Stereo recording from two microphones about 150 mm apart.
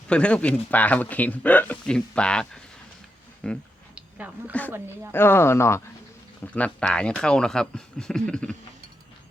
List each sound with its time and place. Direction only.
0.1 s speech: 5° left (ahead or behind)
3.9 s a sound: 10° right (ahead or behind)
4.7 s speech: 15° right (ahead or behind)
5.1 s speech: 15° left (ahead or behind)